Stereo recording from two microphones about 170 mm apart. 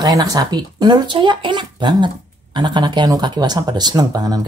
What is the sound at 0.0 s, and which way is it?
Speech, 20° right (ahead or behind).